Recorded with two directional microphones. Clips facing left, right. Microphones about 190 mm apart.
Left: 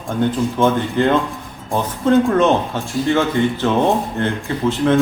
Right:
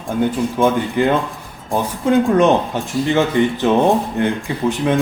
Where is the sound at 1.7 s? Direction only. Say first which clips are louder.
Left 1 dB; centre (ahead or behind).